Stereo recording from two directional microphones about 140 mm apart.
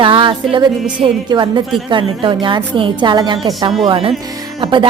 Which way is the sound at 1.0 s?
35° right (ahead or behind).